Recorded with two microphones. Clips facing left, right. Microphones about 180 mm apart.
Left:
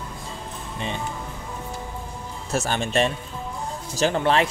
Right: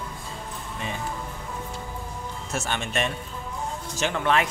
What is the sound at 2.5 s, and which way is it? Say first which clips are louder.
A man's voice: left 6 dB; 35° left (ahead or behind).